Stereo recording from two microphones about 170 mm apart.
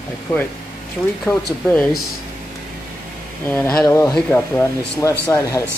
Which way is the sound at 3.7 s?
20° left (ahead or behind).